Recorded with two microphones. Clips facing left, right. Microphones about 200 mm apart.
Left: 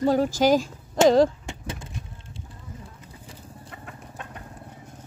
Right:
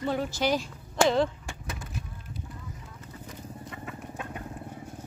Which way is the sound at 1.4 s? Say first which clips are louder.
Left 4 dB; 25° left (ahead or behind).